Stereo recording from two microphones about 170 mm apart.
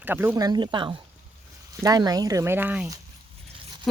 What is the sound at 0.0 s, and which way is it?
Speech, 10° right (ahead or behind).